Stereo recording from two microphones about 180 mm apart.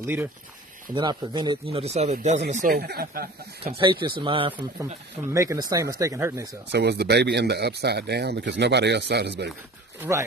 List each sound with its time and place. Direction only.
0.0 s speech: 10° right (ahead or behind)
0.9 s speech: 25° right (ahead or behind); by 2.4 s 40° right (ahead or behind)
2.5 s speech: 50° right (ahead or behind)
3.6 s speech: 25° right (ahead or behind)
5.3 s speech: 15° right (ahead or behind)
6.7 s speech: 70° right (ahead or behind)
9.9 s speech: 15° right (ahead or behind)